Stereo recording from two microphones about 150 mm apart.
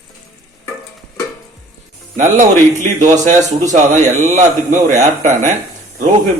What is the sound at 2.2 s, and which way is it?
A man's voice, 55° right (ahead or behind).